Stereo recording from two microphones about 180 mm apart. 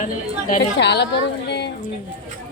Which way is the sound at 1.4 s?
70° left (ahead or behind).